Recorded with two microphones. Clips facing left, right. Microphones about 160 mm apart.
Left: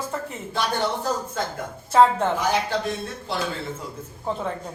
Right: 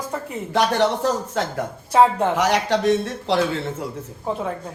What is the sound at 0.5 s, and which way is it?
Speech, 75° right (ahead or behind).